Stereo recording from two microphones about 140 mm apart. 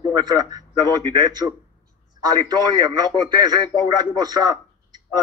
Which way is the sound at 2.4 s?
30° right (ahead or behind).